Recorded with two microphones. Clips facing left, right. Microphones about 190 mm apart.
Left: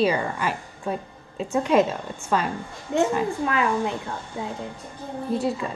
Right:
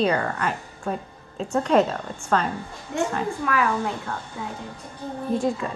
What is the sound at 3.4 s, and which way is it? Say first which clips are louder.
Speech: left 1 dB; 25° left (ahead or behind).